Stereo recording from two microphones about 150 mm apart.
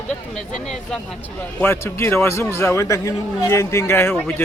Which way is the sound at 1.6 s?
15° left (ahead or behind).